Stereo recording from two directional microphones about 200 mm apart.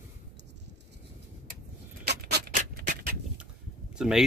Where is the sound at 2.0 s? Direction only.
55° right (ahead or behind).